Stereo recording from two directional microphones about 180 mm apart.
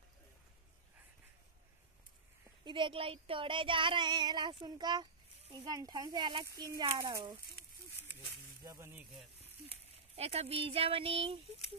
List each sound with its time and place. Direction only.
2.6 s child singing: 25° right (ahead or behind)
8.6 s speech: 15° right (ahead or behind)
10.1 s speech: 35° right (ahead or behind)